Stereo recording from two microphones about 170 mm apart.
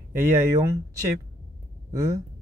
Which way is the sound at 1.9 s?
20° right (ahead or behind).